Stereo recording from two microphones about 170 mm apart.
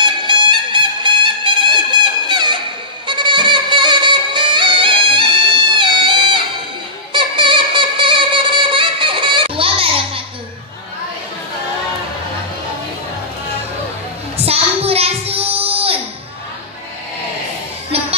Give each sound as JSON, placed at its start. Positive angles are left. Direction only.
{"t": 0.0, "sound": "music", "side_deg": -30}
{"t": 14.3, "sound": "child singing", "side_deg": -35}
{"t": 17.9, "sound": "music", "side_deg": -35}